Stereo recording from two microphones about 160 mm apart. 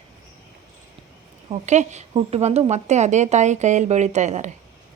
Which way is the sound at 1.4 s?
45° right (ahead or behind).